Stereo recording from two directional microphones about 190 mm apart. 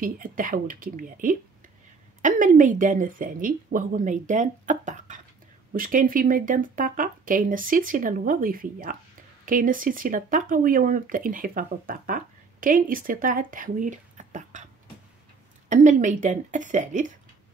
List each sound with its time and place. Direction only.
0.0 s speech: 45° right (ahead or behind)
15.7 s a woman's voice: 40° right (ahead or behind)